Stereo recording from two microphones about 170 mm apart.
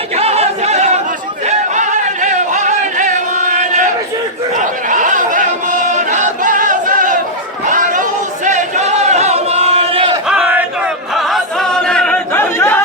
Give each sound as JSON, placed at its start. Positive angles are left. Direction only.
{"t": 0.2, "sound": "chatter", "side_deg": -35}
{"t": 1.5, "sound": "music", "side_deg": -45}
{"t": 4.5, "sound": "a sound", "side_deg": -50}
{"t": 7.6, "sound": "chatter", "side_deg": -50}
{"t": 10.2, "sound": "choir", "side_deg": -5}